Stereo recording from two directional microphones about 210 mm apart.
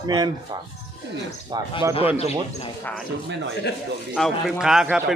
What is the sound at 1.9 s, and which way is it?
Speech, 30° left (ahead or behind).